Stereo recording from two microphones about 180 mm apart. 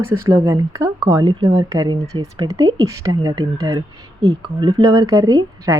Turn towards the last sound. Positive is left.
turn(degrees=-20)  # may be behind; listen again after turning